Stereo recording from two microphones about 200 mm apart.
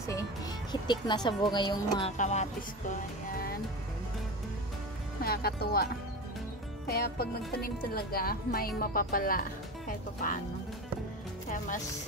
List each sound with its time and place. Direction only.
0.1 s speech: 20° left (ahead or behind)
2.0 s speech: 35° left (ahead or behind)
2.9 s speech: 50° left (ahead or behind)
5.2 s speech: 50° left (ahead or behind)
6.9 s speech: 50° left (ahead or behind)